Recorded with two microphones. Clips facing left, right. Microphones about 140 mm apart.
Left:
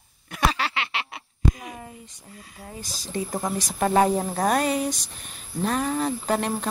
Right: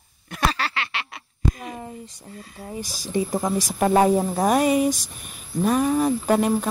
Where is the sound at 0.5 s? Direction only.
15° left (ahead or behind).